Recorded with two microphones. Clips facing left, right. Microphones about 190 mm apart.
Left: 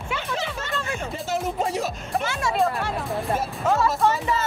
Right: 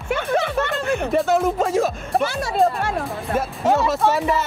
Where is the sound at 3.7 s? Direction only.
75° right (ahead or behind).